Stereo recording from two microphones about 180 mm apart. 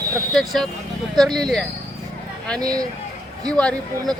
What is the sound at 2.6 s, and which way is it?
Speech, 20° right (ahead or behind).